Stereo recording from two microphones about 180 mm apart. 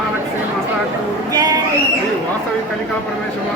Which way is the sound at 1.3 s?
20° right (ahead or behind).